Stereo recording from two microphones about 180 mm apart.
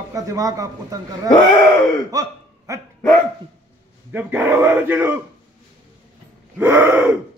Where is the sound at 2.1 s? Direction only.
20° right (ahead or behind).